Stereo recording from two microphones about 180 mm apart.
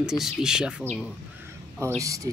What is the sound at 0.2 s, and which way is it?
Speech, 5° right (ahead or behind).